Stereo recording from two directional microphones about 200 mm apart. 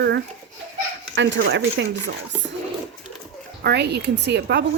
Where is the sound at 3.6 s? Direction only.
55° right (ahead or behind).